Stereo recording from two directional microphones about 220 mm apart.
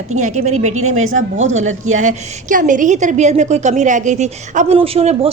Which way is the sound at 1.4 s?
30° right (ahead or behind).